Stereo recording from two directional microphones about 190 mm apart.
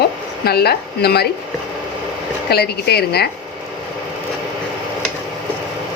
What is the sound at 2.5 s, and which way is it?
Speech, 55° left (ahead or behind).